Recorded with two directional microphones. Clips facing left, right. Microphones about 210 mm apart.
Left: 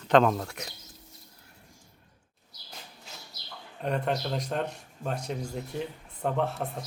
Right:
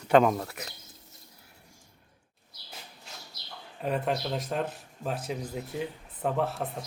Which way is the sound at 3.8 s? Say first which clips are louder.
Even; 5° right (ahead or behind).